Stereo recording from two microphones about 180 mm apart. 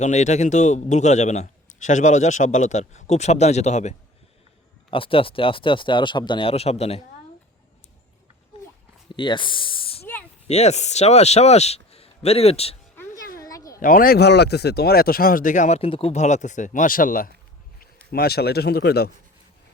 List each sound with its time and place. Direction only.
0.0 s a man's voice: 40° left (ahead or behind)
9.1 s a man's voice: 25° left (ahead or behind)
13.4 s a sound: 20° left (ahead or behind)
13.7 s speech: 50° left (ahead or behind)